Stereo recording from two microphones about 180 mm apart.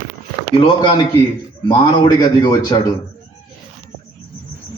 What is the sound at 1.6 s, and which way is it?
A man's voice, 25° left (ahead or behind).